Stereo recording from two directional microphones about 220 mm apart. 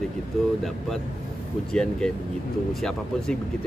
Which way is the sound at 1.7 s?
5° left (ahead or behind).